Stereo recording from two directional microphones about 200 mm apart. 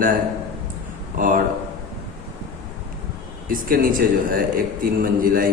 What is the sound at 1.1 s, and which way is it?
Speech, 45° right (ahead or behind).